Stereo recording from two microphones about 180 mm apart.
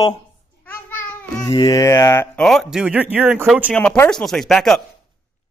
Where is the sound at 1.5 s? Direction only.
20° left (ahead or behind).